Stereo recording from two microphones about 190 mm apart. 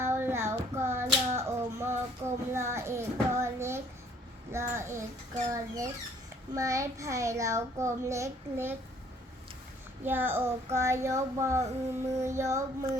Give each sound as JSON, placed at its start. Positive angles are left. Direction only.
{"t": 0.0, "sound": "child singing", "side_deg": -10}
{"t": 4.5, "sound": "a child's voice", "side_deg": -15}
{"t": 10.0, "sound": "a child's voice", "side_deg": -10}